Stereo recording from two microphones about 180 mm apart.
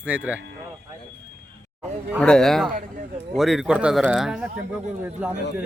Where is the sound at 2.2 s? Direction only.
5° left (ahead or behind).